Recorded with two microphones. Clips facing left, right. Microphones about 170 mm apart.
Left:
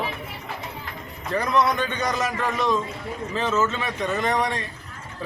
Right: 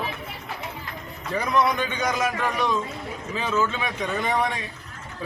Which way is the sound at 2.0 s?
Centre (ahead or behind).